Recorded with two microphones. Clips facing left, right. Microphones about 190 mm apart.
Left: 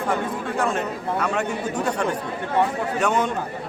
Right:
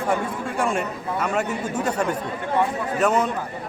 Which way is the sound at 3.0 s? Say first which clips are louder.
Right 2 dB; 5° right (ahead or behind).